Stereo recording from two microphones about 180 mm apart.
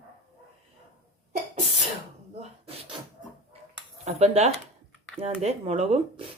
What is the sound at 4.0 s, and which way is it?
Speech, 35° right (ahead or behind).